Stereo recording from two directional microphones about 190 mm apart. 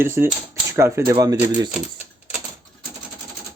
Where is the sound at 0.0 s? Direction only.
15° right (ahead or behind).